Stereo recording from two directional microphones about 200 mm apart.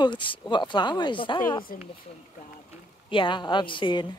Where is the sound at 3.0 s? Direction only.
25° left (ahead or behind).